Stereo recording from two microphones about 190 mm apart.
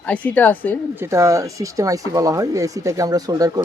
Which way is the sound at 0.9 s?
15° right (ahead or behind).